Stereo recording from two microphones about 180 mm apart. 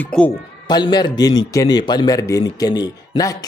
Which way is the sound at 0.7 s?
25° left (ahead or behind).